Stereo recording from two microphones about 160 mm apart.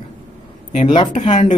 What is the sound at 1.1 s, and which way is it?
Speech, 50° left (ahead or behind).